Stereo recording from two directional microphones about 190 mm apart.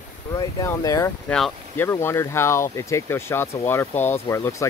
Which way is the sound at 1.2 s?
5° left (ahead or behind).